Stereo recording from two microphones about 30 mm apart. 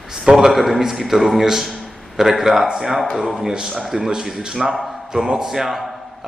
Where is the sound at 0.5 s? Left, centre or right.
Centre.